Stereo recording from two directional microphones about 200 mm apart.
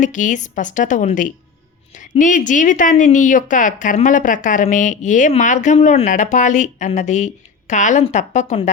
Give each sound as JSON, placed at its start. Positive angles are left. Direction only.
{"t": 0.0, "sound": "a woman's voice", "side_deg": 40}